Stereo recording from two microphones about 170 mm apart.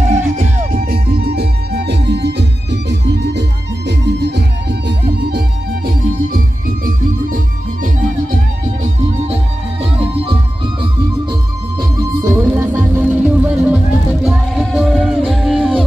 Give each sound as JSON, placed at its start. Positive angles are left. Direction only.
{"t": 0.7, "sound": "music", "side_deg": -55}
{"t": 5.9, "sound": "music", "side_deg": -55}
{"t": 8.8, "sound": "music", "side_deg": -40}
{"t": 12.0, "sound": "music", "side_deg": -20}